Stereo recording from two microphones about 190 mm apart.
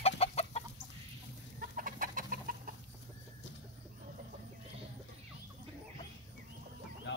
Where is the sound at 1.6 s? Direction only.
45° right (ahead or behind).